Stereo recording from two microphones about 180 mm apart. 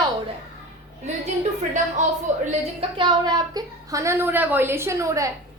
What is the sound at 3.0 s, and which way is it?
A woman's voice, 25° right (ahead or behind).